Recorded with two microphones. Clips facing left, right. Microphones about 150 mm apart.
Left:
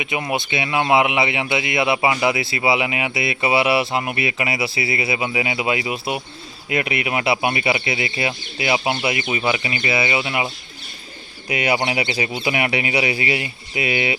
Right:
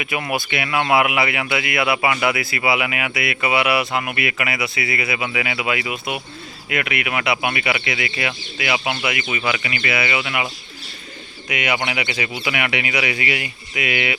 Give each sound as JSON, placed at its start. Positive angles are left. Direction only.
{"t": 0.0, "sound": "speech", "side_deg": 20}